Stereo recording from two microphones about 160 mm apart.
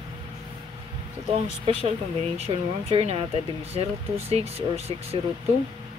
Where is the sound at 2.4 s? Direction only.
35° right (ahead or behind).